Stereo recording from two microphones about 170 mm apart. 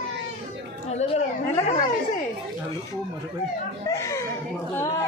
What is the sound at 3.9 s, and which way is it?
A child's voice, 15° left (ahead or behind).